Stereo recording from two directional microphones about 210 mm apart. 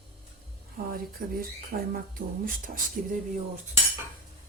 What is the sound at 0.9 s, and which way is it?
A woman's voice, 45° right (ahead or behind).